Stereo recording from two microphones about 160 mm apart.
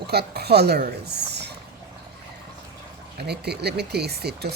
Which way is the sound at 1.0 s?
90° right.